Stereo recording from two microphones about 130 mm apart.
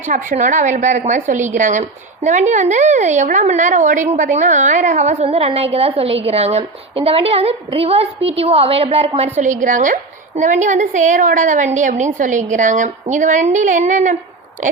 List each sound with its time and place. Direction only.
0.0 s a woman's voice: 85° right; by 9.4 s 50° right (ahead or behind)
9.4 s a woman's voice: 75° right (ahead or behind)